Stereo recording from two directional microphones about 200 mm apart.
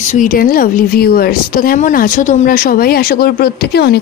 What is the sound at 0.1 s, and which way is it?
Speech, 40° left (ahead or behind).